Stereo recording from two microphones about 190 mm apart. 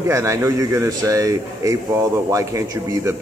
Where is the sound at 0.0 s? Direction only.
15° right (ahead or behind).